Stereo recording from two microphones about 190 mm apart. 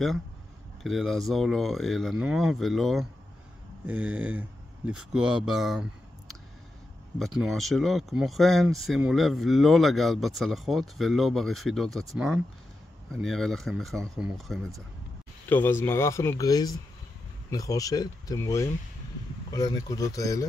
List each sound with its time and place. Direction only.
0.8 s speech: centre (ahead or behind)
13.1 s speech: 5° left (ahead or behind)
15.4 s speech: 10° left (ahead or behind)